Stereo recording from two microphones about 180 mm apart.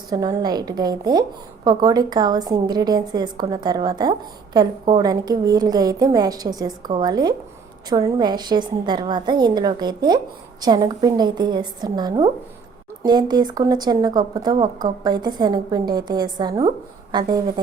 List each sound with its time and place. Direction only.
0.1 s a woman's voice: 20° right (ahead or behind)